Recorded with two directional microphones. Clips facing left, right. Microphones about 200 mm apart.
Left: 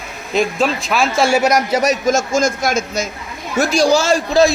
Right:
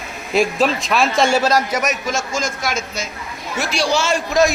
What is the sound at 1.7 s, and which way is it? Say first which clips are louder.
A man's voice: left 6 dB; 35° left (ahead or behind).